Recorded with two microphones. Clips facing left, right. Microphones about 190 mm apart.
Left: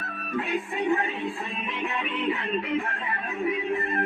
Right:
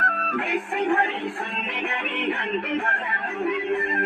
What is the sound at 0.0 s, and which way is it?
Music, 70° right (ahead or behind).